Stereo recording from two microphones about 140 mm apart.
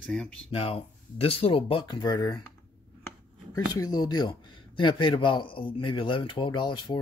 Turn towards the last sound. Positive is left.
turn(degrees=35)  # may be behind; listen again after turning